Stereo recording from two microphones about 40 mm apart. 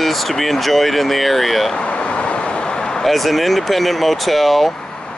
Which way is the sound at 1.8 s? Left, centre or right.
Left.